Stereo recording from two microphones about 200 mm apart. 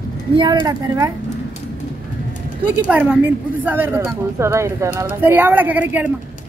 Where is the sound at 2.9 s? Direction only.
5° right (ahead or behind).